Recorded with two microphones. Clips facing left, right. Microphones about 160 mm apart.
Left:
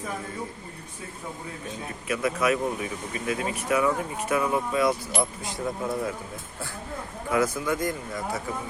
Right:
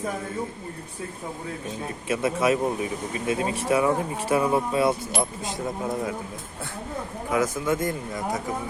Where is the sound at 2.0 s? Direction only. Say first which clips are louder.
Right 2 dB; 25° right (ahead or behind).